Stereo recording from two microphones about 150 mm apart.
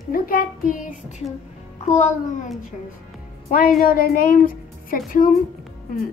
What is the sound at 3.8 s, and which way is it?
Child singing, 75° left (ahead or behind).